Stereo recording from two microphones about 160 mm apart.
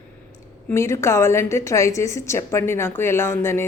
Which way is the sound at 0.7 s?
15° left (ahead or behind).